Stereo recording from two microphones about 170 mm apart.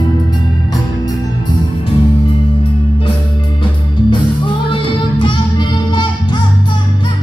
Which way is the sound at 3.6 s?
30° left (ahead or behind).